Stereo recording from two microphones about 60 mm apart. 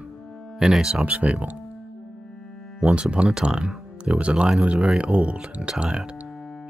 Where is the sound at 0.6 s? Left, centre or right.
Centre.